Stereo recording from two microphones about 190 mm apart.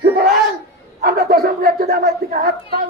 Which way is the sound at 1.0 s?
50° right (ahead or behind).